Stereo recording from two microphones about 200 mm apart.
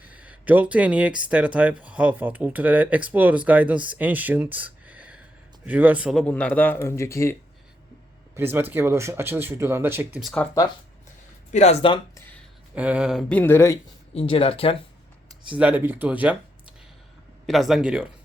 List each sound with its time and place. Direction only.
0.0 s a man's voice: 5° right (ahead or behind); by 7.3 s 15° left (ahead or behind)
8.4 s speech: 10° right (ahead or behind)
11.5 s speech: 35° left (ahead or behind)
12.7 s speech: 5° right (ahead or behind); by 13.7 s 10° left (ahead or behind)
14.1 s speech: 30° left (ahead or behind)
15.5 s speech: 10° right (ahead or behind)
17.4 s speech: centre (ahead or behind)